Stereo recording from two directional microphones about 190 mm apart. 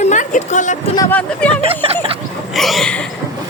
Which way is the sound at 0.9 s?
10° left (ahead or behind).